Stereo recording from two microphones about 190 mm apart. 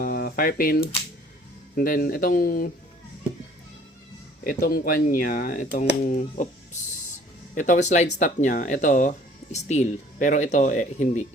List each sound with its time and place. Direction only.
0.0 s speech: 50° left (ahead or behind)
4.4 s speech: 50° left (ahead or behind)